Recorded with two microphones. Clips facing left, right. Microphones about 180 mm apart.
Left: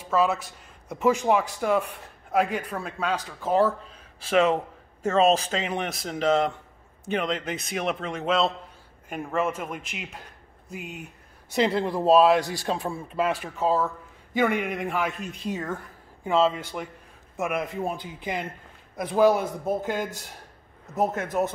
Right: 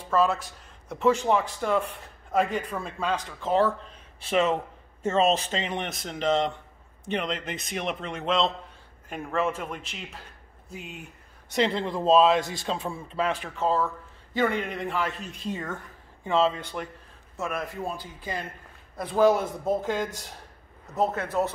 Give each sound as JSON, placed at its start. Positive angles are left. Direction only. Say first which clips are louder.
{"t": 0.1, "sound": "a man's voice", "louder": "even", "side_deg": 5}
{"t": 17.4, "sound": "a man's voice", "louder": "left 4 dB", "side_deg": 20}